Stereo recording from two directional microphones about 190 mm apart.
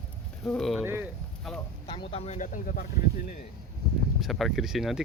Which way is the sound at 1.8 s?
30° left (ahead or behind).